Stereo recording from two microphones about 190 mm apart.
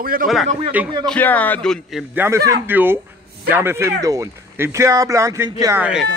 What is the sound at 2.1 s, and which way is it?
A man's voice, 15° right (ahead or behind).